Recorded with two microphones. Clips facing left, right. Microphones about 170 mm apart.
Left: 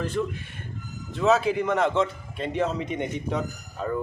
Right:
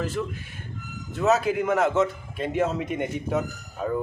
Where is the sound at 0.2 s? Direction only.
5° right (ahead or behind).